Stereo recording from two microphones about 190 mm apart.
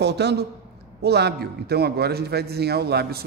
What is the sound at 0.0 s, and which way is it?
A man's voice, 60° right (ahead or behind).